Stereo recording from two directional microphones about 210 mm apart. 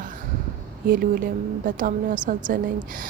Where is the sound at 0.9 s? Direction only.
40° right (ahead or behind).